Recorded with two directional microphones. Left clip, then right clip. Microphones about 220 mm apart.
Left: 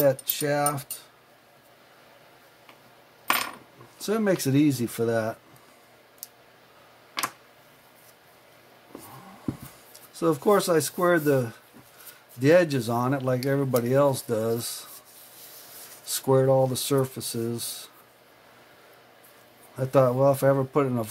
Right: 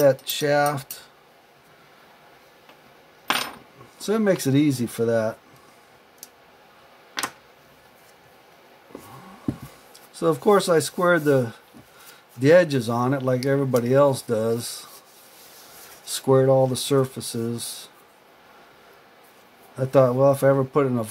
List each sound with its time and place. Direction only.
0.0 s speech: 10° right (ahead or behind)
4.0 s speech: centre (ahead or behind)
10.1 s speech: centre (ahead or behind)
16.1 s speech: centre (ahead or behind)
19.8 s speech: centre (ahead or behind)